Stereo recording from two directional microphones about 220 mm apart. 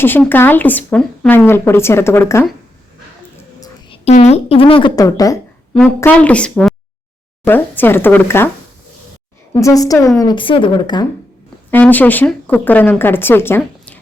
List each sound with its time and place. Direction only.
0.0 s a woman's voice: 10° left (ahead or behind)
3.6 s a woman's voice: 25° left (ahead or behind)
9.5 s a woman's voice: 15° left (ahead or behind)
11.7 s a woman's voice: 5° left (ahead or behind)